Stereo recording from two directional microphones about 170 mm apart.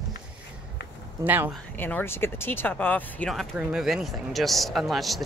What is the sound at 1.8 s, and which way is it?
Speech, 10° left (ahead or behind).